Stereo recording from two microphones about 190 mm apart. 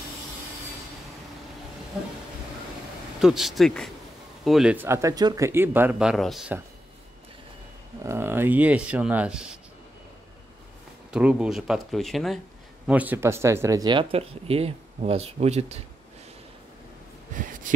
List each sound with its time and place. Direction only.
2.0 s speech: 5° right (ahead or behind)
3.2 s speech: centre (ahead or behind)
8.0 s speech: 15° right (ahead or behind)
11.1 s speech: 5° right (ahead or behind); by 15.8 s 35° right (ahead or behind)
17.4 s heart sounds: 45° right (ahead or behind)